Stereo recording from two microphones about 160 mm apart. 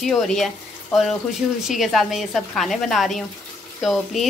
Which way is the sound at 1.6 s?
Centre (ahead or behind).